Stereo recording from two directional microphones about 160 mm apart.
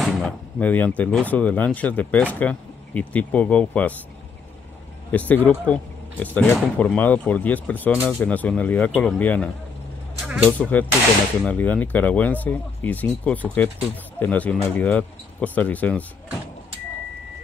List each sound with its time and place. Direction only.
0.0 s speech: 5° left (ahead or behind)
5.3 s speech: 10° left (ahead or behind)
10.2 s vehicle: 5° right (ahead or behind)
10.6 s speech: 10° left (ahead or behind)